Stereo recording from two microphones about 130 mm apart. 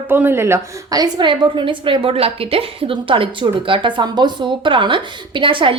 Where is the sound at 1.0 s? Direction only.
35° right (ahead or behind).